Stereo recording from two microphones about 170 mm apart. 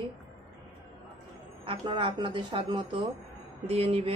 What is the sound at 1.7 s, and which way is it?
A woman's voice, 30° right (ahead or behind).